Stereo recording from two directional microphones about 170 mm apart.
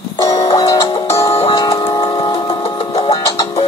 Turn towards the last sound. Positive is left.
turn(degrees=20)  # may be behind; listen again after turning